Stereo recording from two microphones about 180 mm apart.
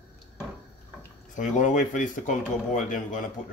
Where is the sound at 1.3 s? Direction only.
45° left (ahead or behind).